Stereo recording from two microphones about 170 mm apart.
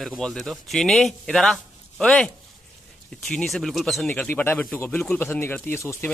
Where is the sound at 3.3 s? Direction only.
5° left (ahead or behind).